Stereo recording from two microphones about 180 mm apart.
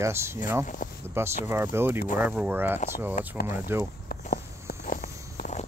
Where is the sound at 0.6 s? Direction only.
45° left (ahead or behind).